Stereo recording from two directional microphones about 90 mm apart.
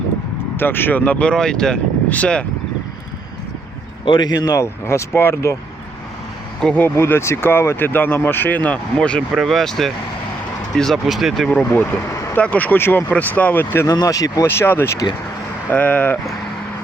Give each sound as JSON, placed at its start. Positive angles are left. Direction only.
{"t": 0.5, "sound": "speech", "side_deg": 25}
{"t": 4.0, "sound": "speech", "side_deg": 60}
{"t": 4.6, "sound": "speech", "side_deg": 30}
{"t": 6.6, "sound": "speech", "side_deg": 10}
{"t": 6.8, "sound": "speech", "side_deg": 25}
{"t": 9.3, "sound": "speech", "side_deg": 0}
{"t": 11.4, "sound": "speech", "side_deg": 15}
{"t": 13.8, "sound": "speech", "side_deg": 45}
{"t": 14.4, "sound": "speech", "side_deg": 25}